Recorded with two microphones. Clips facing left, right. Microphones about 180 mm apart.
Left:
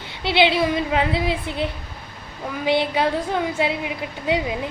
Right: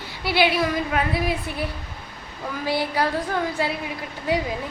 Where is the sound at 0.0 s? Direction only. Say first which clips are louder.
Left 2 dB; 25° left (ahead or behind).